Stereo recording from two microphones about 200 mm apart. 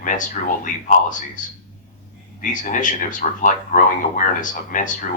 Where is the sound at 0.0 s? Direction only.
40° left (ahead or behind).